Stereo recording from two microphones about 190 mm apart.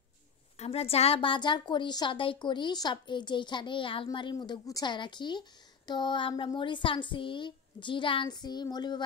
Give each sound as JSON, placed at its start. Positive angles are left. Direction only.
{"t": 0.6, "sound": "a woman's voice", "side_deg": 30}